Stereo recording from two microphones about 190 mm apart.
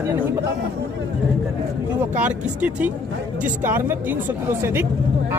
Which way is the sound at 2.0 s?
5° right (ahead or behind).